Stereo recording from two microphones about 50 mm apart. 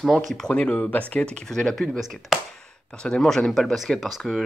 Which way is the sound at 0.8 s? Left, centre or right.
Left.